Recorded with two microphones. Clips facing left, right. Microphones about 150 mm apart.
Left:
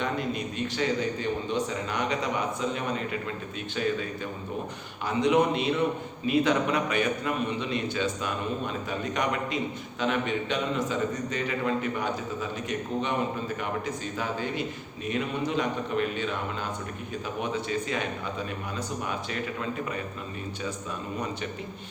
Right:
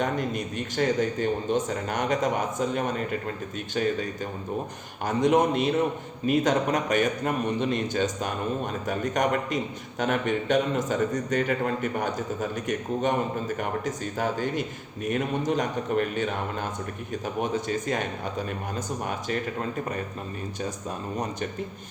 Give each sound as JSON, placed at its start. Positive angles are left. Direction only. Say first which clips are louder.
{"t": 0.0, "sound": "a man's voice", "louder": "right 2 dB", "side_deg": -45}